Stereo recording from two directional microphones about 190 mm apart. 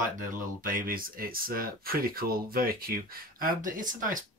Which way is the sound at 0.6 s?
50° right (ahead or behind).